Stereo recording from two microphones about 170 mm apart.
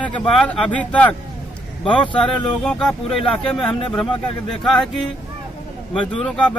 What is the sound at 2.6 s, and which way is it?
Speech, 5° left (ahead or behind).